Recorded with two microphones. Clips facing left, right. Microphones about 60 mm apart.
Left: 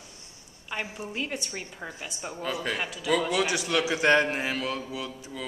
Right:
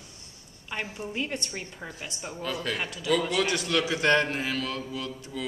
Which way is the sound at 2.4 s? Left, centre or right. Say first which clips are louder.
Left 1 dB; centre.